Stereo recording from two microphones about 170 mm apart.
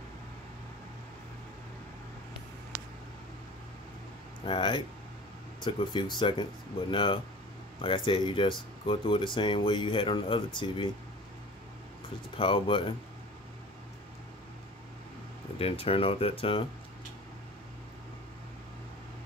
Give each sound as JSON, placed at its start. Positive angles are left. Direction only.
{"t": 4.5, "sound": "speech", "side_deg": 30}
{"t": 12.4, "sound": "speech", "side_deg": 30}
{"t": 15.6, "sound": "speech", "side_deg": 35}